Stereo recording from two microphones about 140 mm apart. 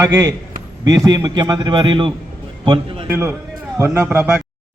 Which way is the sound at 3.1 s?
20° right (ahead or behind).